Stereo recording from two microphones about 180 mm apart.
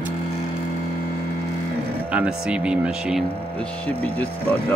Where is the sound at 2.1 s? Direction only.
5° right (ahead or behind).